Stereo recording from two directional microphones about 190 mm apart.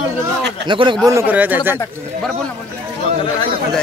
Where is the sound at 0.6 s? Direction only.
25° right (ahead or behind); by 1.7 s 10° right (ahead or behind).